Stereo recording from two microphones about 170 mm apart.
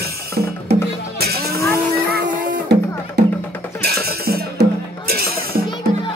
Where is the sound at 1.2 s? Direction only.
65° right (ahead or behind).